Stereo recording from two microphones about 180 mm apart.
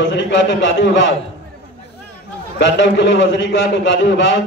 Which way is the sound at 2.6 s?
80° left.